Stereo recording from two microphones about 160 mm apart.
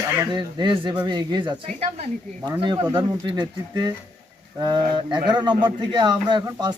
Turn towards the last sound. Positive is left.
turn(degrees=-30)  # may be behind; listen again after turning